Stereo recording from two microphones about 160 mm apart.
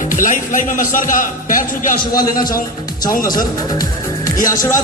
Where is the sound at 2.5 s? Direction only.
25° left (ahead or behind).